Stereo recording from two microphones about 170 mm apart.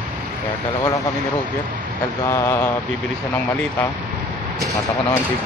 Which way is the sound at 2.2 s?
15° left (ahead or behind).